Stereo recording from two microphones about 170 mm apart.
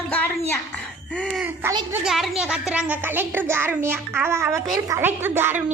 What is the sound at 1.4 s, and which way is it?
A child's voice, 10° right (ahead or behind).